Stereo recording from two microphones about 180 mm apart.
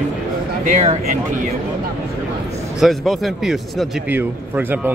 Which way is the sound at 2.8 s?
Centre (ahead or behind).